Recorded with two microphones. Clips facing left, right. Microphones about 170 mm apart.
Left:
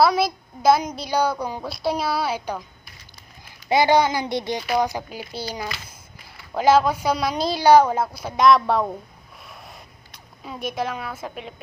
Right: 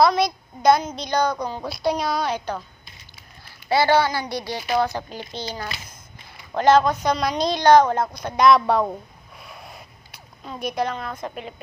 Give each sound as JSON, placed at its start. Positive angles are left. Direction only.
{"t": 0.0, "sound": "a woman's voice", "side_deg": 5}
{"t": 3.7, "sound": "a woman's voice", "side_deg": 15}
{"t": 6.5, "sound": "a woman's voice", "side_deg": 5}
{"t": 9.4, "sound": "a sound", "side_deg": 0}